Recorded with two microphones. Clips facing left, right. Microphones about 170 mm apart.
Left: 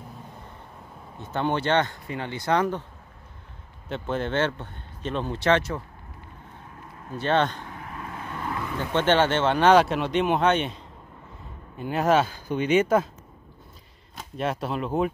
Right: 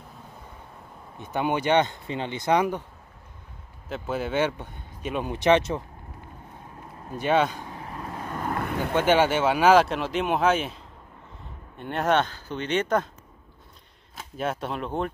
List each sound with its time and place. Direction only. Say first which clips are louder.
1.1 s a man's voice: even; 15° right (ahead or behind)
3.9 s a man's voice: left 1 dB; 5° right (ahead or behind)
7.1 s a man's voice: right 1 dB; 10° right (ahead or behind)
7.7 s vehicle: right 1 dB; 30° right (ahead or behind)
8.9 s speech: even; 10° right (ahead or behind); by 13.1 s 5° left (ahead or behind)
14.1 s speech: left 1 dB; centre (ahead or behind)